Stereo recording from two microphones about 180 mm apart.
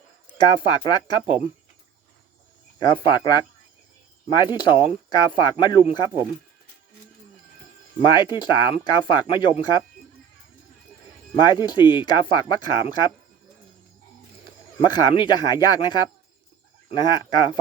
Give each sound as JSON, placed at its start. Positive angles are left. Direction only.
{"t": 0.3, "sound": "speech", "side_deg": 25}
{"t": 2.7, "sound": "speech", "side_deg": 25}
{"t": 8.0, "sound": "speech", "side_deg": 25}
{"t": 11.4, "sound": "speech", "side_deg": 25}
{"t": 14.8, "sound": "speech", "side_deg": 25}